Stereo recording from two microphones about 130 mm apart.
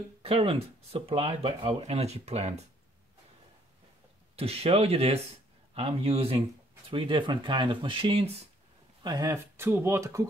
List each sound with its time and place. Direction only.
0.2 s speech: 45° right (ahead or behind)
4.4 s speech: 50° right (ahead or behind)
9.0 s speech: 25° right (ahead or behind)